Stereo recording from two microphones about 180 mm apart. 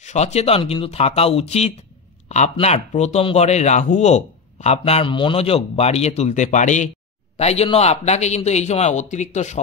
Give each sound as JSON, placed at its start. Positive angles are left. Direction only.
{"t": 0.0, "sound": "a man's voice", "side_deg": 40}